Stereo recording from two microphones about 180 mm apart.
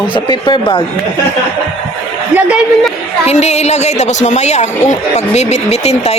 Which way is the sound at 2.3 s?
5° right (ahead or behind).